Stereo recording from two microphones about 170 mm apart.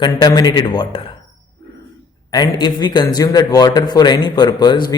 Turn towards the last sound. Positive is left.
turn(degrees=25)  # may be behind; listen again after turning